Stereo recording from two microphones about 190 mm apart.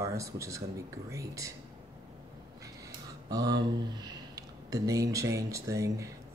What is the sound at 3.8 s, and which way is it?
Speech, 20° right (ahead or behind).